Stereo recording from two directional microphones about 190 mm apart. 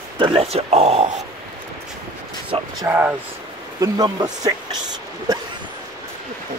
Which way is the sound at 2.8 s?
10° right (ahead or behind).